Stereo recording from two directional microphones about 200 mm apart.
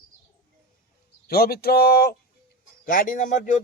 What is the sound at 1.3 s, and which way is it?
Speech, 50° left (ahead or behind).